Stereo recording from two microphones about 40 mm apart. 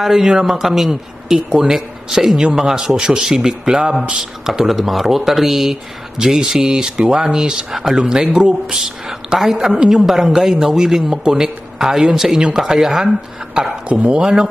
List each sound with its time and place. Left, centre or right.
0.0 s a man's voice: centre
7.7 s a man's voice: centre
13.6 s speech: right